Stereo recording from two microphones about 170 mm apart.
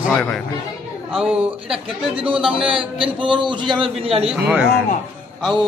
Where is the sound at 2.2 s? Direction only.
30° right (ahead or behind).